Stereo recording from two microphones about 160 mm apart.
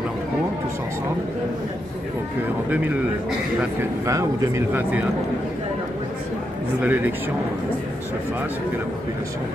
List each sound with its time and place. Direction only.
2.7 s a man's voice: 10° right (ahead or behind)
4.0 s a man's voice: 20° right (ahead or behind)
6.8 s a man's voice: 10° right (ahead or behind)